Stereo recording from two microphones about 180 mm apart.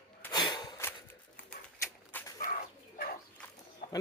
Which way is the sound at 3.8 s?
50° left (ahead or behind).